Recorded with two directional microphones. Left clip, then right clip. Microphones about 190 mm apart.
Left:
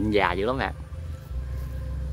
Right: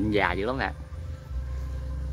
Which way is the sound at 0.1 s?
5° left (ahead or behind).